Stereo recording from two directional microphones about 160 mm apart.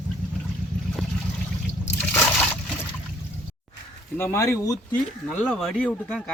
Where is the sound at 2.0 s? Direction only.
10° left (ahead or behind).